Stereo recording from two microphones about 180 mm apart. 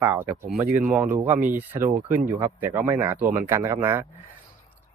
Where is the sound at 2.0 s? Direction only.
45° right (ahead or behind).